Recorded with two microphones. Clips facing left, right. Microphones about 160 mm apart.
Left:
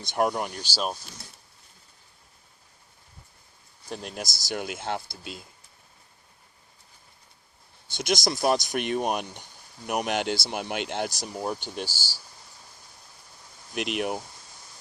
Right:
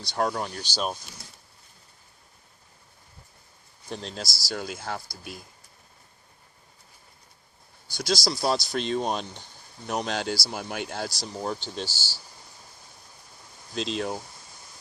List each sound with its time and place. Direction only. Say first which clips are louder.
0.0 s speech: left 2 dB; 20° left (ahead or behind)
3.8 s speech: even; 10° left (ahead or behind)
7.9 s speech: left 1 dB; 20° left (ahead or behind)
13.7 s speech: left 1 dB; 15° left (ahead or behind)